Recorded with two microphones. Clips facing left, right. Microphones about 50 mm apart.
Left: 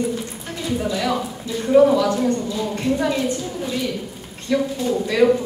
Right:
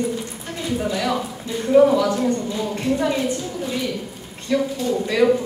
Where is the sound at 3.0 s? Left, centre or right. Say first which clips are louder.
Right 1 dB; centre.